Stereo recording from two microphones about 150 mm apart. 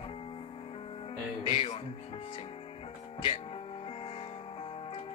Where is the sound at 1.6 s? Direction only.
40° left (ahead or behind).